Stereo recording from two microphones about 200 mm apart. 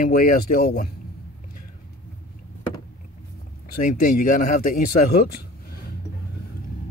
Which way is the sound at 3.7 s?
45° left (ahead or behind).